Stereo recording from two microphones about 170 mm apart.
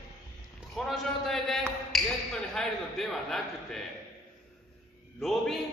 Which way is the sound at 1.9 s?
Centre (ahead or behind).